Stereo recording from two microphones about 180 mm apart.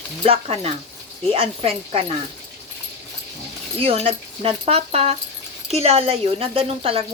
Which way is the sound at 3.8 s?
30° right (ahead or behind).